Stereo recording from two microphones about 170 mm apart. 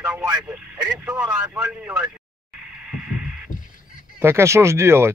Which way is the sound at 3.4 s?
50° left (ahead or behind).